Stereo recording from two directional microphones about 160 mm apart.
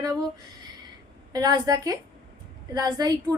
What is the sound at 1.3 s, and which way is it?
A woman's voice, 25° right (ahead or behind).